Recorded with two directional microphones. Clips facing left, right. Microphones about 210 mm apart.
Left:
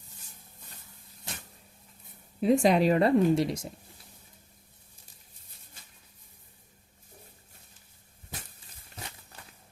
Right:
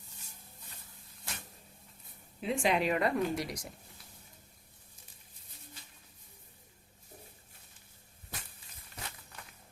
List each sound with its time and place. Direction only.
2.4 s speech: 40° left (ahead or behind)